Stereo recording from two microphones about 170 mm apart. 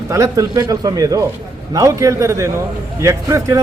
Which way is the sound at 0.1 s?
20° right (ahead or behind).